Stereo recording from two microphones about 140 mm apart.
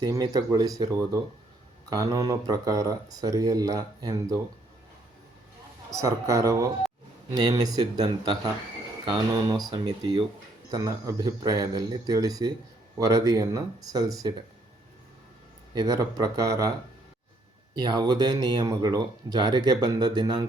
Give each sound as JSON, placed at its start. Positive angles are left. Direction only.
{"t": 0.0, "sound": "speech", "side_deg": -30}
{"t": 5.9, "sound": "speech", "side_deg": -25}
{"t": 9.5, "sound": "speech", "side_deg": -25}
{"t": 15.7, "sound": "speech", "side_deg": -25}
{"t": 17.7, "sound": "speech", "side_deg": -30}